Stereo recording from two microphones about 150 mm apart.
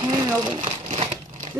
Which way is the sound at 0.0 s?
30° right (ahead or behind).